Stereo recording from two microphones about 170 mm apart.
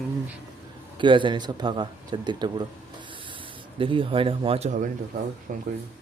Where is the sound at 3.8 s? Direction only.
30° right (ahead or behind); by 5.6 s 50° right (ahead or behind).